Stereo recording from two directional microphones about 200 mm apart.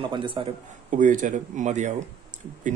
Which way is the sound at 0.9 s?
40° right (ahead or behind).